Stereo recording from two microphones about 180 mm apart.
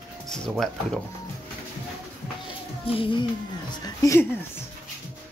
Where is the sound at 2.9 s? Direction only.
30° left (ahead or behind).